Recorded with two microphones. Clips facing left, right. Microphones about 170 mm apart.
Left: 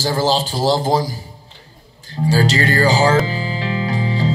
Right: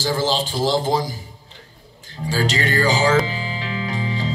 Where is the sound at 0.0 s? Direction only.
40° left (ahead or behind).